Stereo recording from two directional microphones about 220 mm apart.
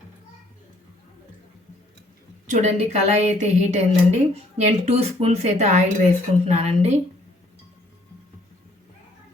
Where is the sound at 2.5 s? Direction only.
30° right (ahead or behind).